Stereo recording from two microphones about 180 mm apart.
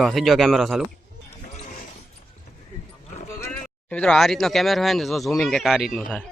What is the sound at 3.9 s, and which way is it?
Speech, 5° left (ahead or behind).